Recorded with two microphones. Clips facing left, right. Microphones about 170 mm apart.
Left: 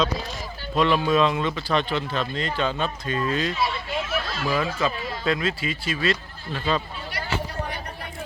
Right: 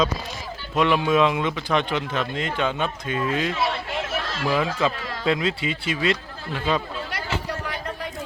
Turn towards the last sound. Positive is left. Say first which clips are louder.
# right 1 dB
turn(degrees=-10)  # may be behind; listen again after turning